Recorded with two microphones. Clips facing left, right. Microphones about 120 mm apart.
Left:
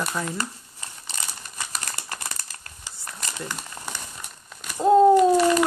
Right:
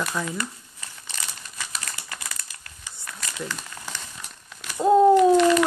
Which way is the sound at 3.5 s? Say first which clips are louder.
Left 1 dB; 15° left (ahead or behind).